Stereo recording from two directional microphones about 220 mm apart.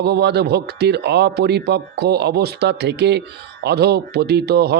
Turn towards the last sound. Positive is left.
turn(degrees=-50)  # may be behind; listen again after turning